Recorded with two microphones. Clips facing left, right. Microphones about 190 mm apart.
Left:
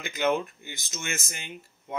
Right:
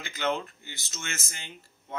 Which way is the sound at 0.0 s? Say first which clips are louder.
Left 4 dB; 15° left (ahead or behind).